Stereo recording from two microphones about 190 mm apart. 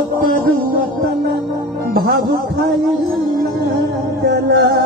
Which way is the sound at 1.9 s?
55° right (ahead or behind).